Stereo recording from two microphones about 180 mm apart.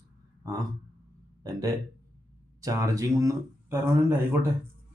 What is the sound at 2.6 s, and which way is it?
Speech, 20° right (ahead or behind).